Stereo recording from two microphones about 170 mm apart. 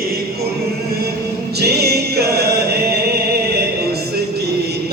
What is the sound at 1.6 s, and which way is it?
Chant, 70° right (ahead or behind).